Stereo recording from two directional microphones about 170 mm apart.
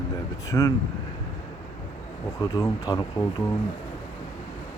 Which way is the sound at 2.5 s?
20° left (ahead or behind).